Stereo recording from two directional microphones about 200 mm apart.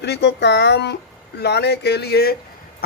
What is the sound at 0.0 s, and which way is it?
Speech, 60° left (ahead or behind).